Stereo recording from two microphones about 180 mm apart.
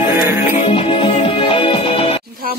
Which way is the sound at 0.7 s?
30° left (ahead or behind).